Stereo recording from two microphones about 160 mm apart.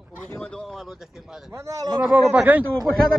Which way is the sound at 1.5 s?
20° right (ahead or behind).